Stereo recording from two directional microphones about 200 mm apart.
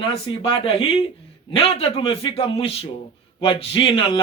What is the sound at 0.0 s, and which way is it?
A man's voice, 25° left (ahead or behind).